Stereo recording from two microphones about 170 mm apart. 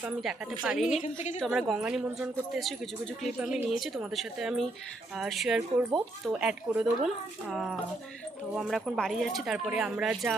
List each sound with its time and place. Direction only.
0.0 s speech: centre (ahead or behind)
0.9 s a woman's voice: 45° left (ahead or behind)
1.4 s speech: centre (ahead or behind)